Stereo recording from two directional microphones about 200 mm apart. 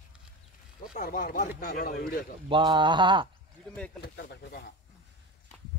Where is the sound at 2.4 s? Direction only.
25° right (ahead or behind).